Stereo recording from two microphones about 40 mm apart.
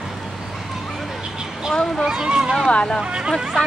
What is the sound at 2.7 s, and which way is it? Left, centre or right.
Vehicle, left.